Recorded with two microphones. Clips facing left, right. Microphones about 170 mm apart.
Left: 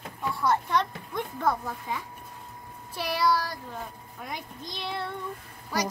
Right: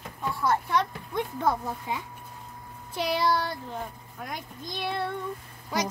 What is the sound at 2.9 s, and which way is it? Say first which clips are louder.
Child singing: even; 20° right (ahead or behind).